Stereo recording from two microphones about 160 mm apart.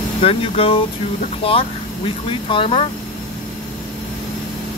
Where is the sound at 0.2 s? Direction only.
35° left (ahead or behind).